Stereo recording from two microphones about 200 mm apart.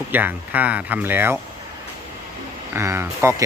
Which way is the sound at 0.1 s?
10° right (ahead or behind).